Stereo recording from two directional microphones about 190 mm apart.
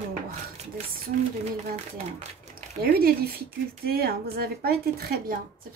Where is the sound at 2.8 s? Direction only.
55° right (ahead or behind).